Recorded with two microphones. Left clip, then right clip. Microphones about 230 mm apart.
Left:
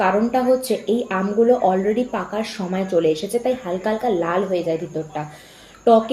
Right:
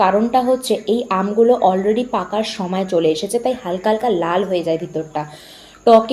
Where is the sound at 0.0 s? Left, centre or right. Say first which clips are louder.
Right 4 dB; right.